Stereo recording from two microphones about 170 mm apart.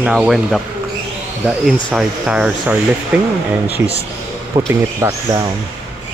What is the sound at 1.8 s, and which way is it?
Speech, 5° right (ahead or behind).